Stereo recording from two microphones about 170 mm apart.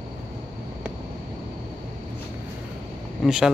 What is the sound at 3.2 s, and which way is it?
Speech, centre (ahead or behind).